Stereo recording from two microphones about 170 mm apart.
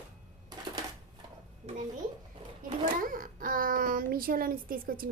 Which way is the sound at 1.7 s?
40° right (ahead or behind).